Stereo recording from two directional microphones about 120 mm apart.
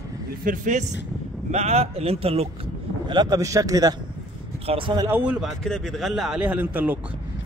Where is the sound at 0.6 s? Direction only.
90° right.